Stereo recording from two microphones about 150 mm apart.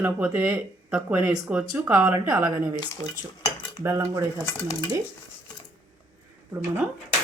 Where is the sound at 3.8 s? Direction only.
20° right (ahead or behind).